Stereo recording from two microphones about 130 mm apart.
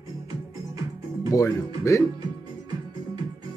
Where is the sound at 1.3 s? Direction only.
25° left (ahead or behind).